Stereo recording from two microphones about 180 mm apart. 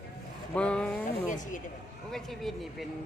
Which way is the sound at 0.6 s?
5° left (ahead or behind).